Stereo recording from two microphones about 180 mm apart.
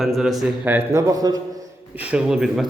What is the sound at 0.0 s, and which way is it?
A man's voice, centre (ahead or behind).